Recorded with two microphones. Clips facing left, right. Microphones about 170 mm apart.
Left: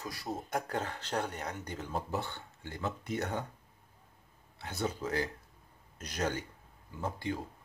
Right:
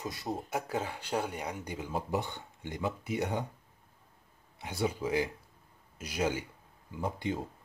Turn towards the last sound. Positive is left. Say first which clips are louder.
# right 2 dB
turn(degrees=-15)  # may be behind; listen again after turning